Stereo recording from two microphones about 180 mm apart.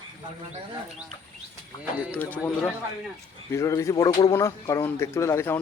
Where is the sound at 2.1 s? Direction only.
10° left (ahead or behind).